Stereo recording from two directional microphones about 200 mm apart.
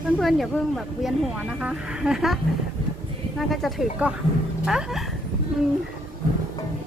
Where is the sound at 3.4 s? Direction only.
Centre (ahead or behind).